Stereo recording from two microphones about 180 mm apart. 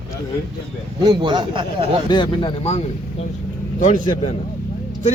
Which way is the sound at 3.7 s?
45° left (ahead or behind).